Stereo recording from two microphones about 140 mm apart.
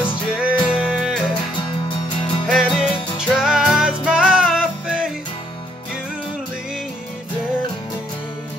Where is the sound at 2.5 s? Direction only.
Centre (ahead or behind).